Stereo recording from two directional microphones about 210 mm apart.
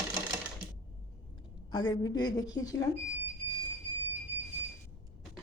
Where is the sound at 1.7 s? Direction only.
20° left (ahead or behind).